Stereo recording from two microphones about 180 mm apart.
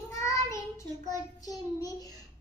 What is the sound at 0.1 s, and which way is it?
Child singing, 15° left (ahead or behind).